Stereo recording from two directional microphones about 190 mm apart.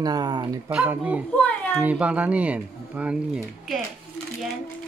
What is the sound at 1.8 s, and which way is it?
Speech, 5° right (ahead or behind).